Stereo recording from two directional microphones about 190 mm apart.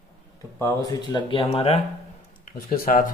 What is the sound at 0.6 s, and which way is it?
Speech, 20° left (ahead or behind).